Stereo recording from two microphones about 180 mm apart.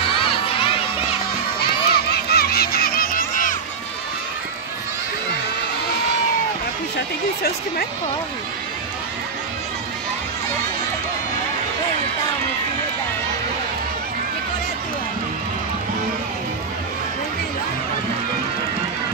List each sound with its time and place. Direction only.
0.2 s children shouting: 30° left (ahead or behind)
1.9 s music: 60° left (ahead or behind)